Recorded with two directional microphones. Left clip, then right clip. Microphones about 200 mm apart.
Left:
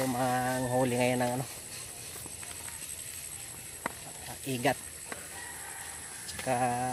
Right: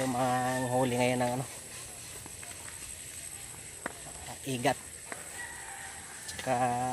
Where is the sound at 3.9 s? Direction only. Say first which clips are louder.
Left 3 dB; 30° left (ahead or behind).